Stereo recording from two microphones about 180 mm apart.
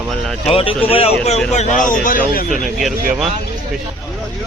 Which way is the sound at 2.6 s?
Centre (ahead or behind).